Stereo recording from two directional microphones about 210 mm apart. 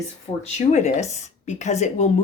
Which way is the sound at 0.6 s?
35° left (ahead or behind).